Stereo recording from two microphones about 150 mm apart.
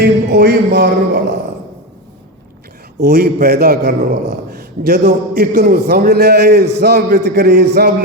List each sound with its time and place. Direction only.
0.0 s a man's voice: 75° right (ahead or behind)
3.0 s a man's voice: 90° right